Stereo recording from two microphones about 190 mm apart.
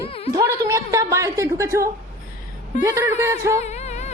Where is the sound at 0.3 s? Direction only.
15° right (ahead or behind).